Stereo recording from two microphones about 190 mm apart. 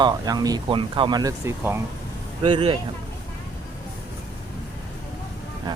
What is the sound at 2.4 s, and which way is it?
Speech, 30° right (ahead or behind).